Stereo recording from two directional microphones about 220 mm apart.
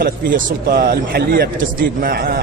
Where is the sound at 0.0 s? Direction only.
45° right (ahead or behind).